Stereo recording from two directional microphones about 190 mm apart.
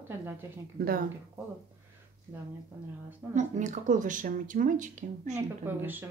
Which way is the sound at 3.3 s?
40° right (ahead or behind).